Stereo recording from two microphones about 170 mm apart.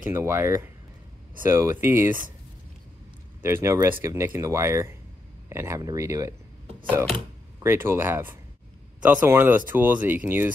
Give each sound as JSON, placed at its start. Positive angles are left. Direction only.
{"t": 0.0, "sound": "speech", "side_deg": -15}
{"t": 3.4, "sound": "speech", "side_deg": -15}
{"t": 7.6, "sound": "speech", "side_deg": -15}